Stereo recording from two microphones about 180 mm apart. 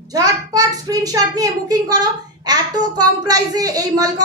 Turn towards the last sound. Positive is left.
turn(degrees=-20)  # may be behind; listen again after turning